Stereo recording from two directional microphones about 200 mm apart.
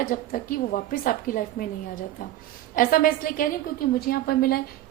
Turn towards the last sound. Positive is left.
turn(degrees=50)  # may be behind; listen again after turning